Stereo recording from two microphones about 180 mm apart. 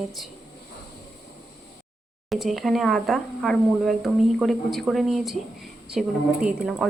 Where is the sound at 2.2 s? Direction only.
Centre (ahead or behind).